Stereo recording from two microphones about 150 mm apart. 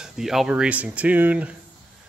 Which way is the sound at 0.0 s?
5° right (ahead or behind).